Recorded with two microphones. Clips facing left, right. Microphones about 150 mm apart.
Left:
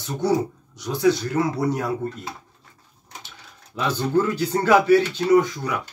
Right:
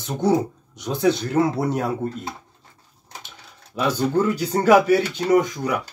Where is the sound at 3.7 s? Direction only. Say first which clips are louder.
Right 1 dB; 10° right (ahead or behind).